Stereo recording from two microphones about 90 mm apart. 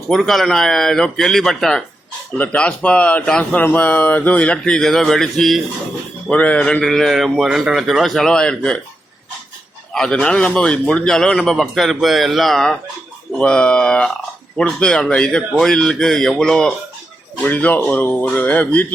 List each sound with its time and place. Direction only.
0.1 s speech: centre (ahead or behind)
2.4 s speech: 15° left (ahead or behind)
6.3 s speech: 15° left (ahead or behind)
9.9 s speech: 10° left (ahead or behind)
17.4 s speech: 15° left (ahead or behind)